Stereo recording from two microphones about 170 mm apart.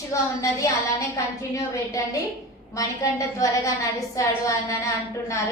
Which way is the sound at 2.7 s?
20° left (ahead or behind).